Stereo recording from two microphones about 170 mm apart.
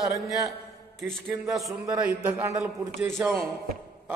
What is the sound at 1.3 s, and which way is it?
A man's voice, 20° right (ahead or behind).